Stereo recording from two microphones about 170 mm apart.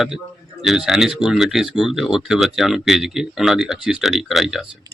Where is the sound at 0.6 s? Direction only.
Centre (ahead or behind).